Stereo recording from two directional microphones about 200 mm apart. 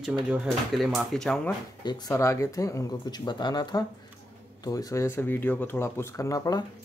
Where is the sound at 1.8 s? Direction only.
20° left (ahead or behind).